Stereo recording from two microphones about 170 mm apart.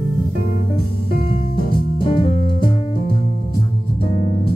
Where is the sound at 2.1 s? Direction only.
30° left (ahead or behind).